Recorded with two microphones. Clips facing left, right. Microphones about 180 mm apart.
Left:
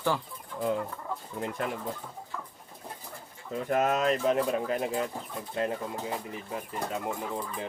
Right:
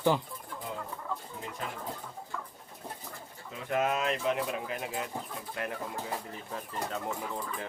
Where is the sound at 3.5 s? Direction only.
45° left (ahead or behind).